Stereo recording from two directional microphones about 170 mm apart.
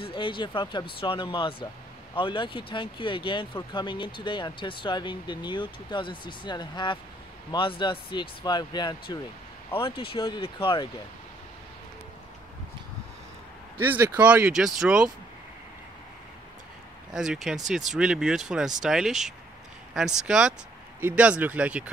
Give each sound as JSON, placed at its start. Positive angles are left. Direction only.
{"t": 0.0, "sound": "speech", "side_deg": 30}
{"t": 13.7, "sound": "speech", "side_deg": -10}
{"t": 17.1, "sound": "speech", "side_deg": -5}